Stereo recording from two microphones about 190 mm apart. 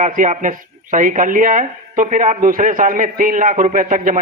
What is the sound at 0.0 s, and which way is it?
Speech, 40° right (ahead or behind).